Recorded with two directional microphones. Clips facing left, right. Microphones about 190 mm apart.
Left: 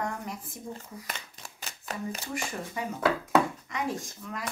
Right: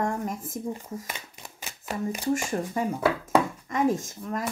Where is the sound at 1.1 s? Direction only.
10° right (ahead or behind).